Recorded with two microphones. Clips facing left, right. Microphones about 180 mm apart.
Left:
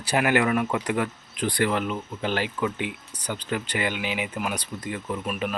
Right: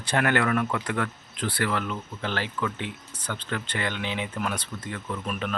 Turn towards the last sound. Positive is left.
turn(degrees=5)  # may be behind; listen again after turning